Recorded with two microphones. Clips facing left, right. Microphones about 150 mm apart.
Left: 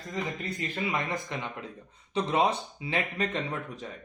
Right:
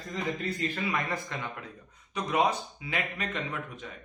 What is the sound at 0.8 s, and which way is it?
Speech, 20° left (ahead or behind).